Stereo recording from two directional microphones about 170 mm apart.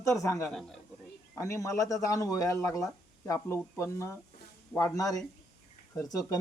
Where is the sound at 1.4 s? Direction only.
20° left (ahead or behind).